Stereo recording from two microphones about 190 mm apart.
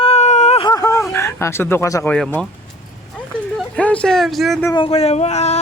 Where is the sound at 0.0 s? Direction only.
35° left (ahead or behind).